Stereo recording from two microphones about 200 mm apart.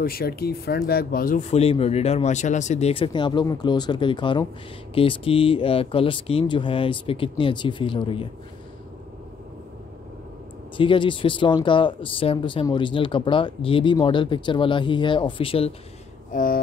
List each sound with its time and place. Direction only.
0.0 s speech: 50° left (ahead or behind); by 8.3 s 25° left (ahead or behind)
10.8 s speech: 25° left (ahead or behind)
16.3 s speech: 40° left (ahead or behind)